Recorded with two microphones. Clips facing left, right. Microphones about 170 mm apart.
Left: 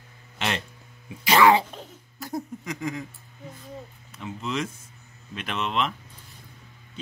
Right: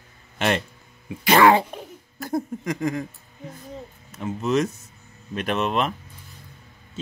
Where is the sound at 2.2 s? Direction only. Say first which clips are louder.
Right 6 dB; 55° right (ahead or behind).